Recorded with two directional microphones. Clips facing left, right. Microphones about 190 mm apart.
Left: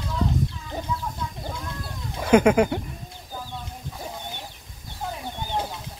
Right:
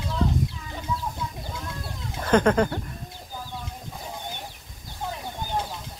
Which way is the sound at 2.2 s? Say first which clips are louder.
Left 3 dB; 10° left (ahead or behind).